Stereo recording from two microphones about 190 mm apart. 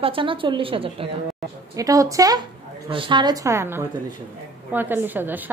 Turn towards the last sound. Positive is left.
turn(degrees=-10)  # may be behind; listen again after turning